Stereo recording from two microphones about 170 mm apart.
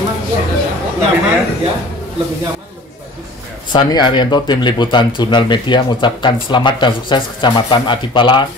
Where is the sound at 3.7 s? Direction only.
25° left (ahead or behind).